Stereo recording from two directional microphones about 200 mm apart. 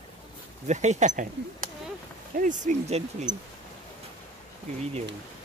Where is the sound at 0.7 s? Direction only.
35° right (ahead or behind).